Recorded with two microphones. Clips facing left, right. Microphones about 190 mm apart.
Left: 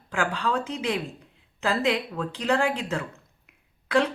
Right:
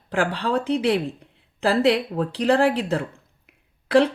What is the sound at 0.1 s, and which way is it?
Speech, 35° right (ahead or behind).